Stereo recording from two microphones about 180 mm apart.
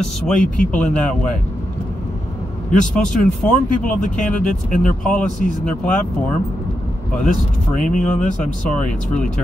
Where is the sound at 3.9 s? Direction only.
45° left (ahead or behind).